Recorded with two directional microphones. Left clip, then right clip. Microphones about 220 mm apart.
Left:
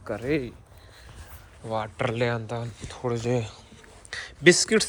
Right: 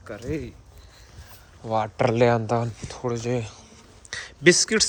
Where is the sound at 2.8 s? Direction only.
20° right (ahead or behind).